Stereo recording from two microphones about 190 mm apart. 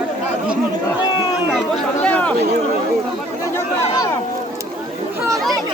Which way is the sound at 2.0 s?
5° left (ahead or behind).